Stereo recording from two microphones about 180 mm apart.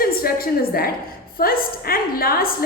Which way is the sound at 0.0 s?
55° left (ahead or behind).